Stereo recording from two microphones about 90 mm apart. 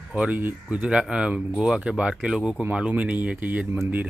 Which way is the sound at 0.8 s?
10° right (ahead or behind).